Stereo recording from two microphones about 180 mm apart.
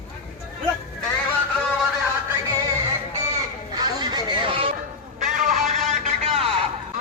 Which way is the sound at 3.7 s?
25° right (ahead or behind).